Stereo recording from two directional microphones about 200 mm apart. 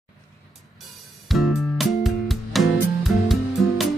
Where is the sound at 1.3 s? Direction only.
Centre (ahead or behind).